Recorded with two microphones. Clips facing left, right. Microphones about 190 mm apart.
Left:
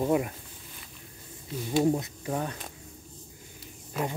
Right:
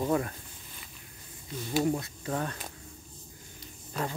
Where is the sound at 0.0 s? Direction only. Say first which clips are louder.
Left 3 dB; 15° left (ahead or behind).